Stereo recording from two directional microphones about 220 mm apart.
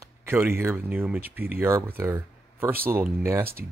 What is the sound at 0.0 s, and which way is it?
Speech, 10° right (ahead or behind).